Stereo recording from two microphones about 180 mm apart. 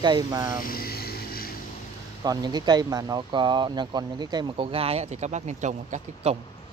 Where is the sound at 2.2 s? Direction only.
20° right (ahead or behind); by 6.4 s 40° right (ahead or behind).